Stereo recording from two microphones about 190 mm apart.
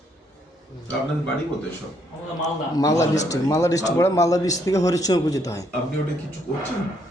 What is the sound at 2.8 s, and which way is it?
A man's voice, 15° left (ahead or behind).